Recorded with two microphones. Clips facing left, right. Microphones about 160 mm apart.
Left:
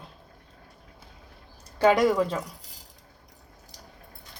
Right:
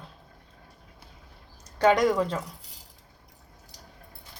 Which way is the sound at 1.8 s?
5° left (ahead or behind).